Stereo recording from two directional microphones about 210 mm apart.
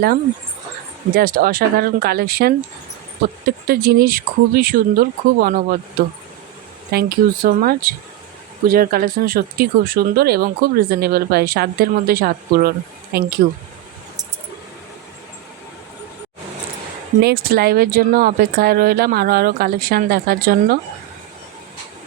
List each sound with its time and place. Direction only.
1.1 s speech: 40° right (ahead or behind)
6.9 s speech: 45° right (ahead or behind)
17.2 s speech: 50° right (ahead or behind)